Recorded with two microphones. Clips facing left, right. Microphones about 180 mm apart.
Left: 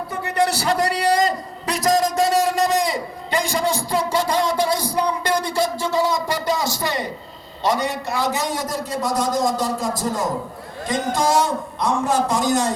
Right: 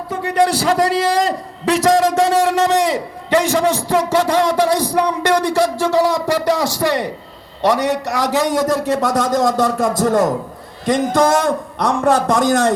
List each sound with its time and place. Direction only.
0.1 s a man's voice: 90° right
8.6 s a man's voice: 65° right (ahead or behind)